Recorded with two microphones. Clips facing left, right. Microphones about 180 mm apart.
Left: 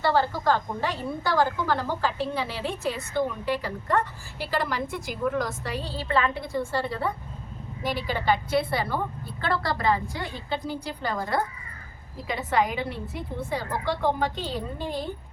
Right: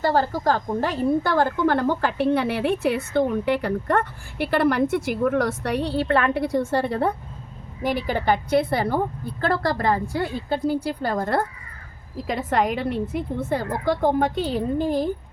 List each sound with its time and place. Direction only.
0.0 s a woman's voice: 40° right (ahead or behind); by 6.6 s 65° right (ahead or behind)
6.7 s a woman's voice: 55° right (ahead or behind)